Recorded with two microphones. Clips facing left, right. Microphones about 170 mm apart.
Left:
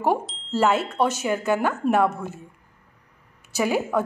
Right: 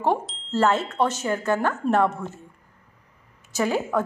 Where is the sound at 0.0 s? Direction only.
10° left (ahead or behind).